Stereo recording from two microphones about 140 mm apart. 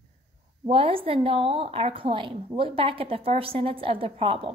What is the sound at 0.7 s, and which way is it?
A woman's voice, 40° right (ahead or behind).